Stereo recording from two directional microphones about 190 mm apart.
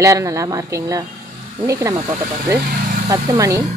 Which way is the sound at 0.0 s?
15° right (ahead or behind).